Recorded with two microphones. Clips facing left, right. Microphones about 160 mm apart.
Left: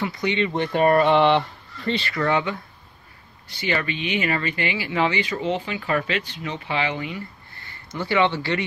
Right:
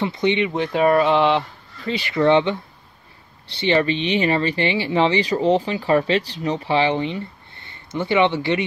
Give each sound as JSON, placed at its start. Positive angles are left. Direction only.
{"t": 0.0, "sound": "speech", "side_deg": -25}
{"t": 0.5, "sound": "speech", "side_deg": 0}
{"t": 2.0, "sound": "speech", "side_deg": -20}